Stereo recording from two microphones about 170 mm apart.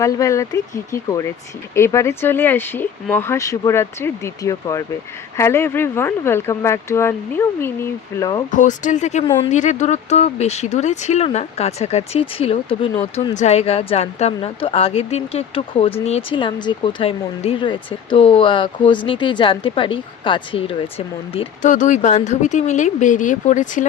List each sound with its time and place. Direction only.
0.0 s speech: 20° left (ahead or behind)
8.4 s speech: 50° left (ahead or behind); by 20.9 s 30° left (ahead or behind)
21.6 s speech: 50° left (ahead or behind)